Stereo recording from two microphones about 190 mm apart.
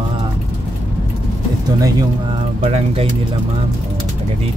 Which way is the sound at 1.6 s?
20° right (ahead or behind).